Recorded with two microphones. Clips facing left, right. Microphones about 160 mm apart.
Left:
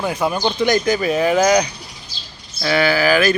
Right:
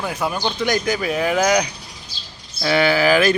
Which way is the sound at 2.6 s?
20° right (ahead or behind).